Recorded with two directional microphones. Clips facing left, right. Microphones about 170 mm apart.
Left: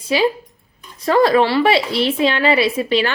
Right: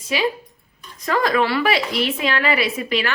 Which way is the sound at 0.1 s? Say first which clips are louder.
Left 5 dB; 30° left (ahead or behind).